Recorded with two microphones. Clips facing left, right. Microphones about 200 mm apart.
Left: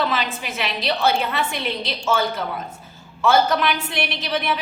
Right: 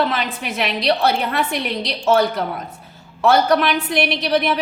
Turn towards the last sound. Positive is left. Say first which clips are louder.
# right 6 dB
turn(degrees=-60)  # may be behind; listen again after turning